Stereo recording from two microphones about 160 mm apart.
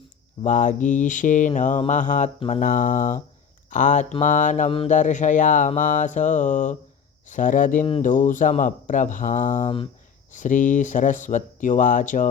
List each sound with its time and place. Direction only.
0.4 s speech: 50° left (ahead or behind)
9.6 s speech: 35° left (ahead or behind)
10.3 s speech: 50° left (ahead or behind)